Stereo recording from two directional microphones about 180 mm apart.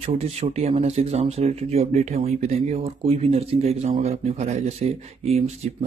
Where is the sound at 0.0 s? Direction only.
35° right (ahead or behind).